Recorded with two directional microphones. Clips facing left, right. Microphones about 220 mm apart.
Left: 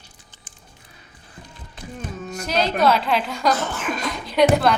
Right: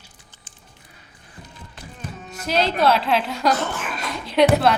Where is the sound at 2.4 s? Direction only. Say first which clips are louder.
Even; centre (ahead or behind).